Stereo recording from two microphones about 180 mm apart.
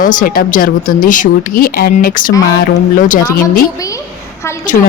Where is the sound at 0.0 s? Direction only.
50° left (ahead or behind).